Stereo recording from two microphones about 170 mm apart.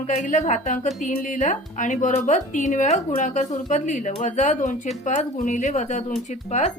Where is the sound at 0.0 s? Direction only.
45° left (ahead or behind).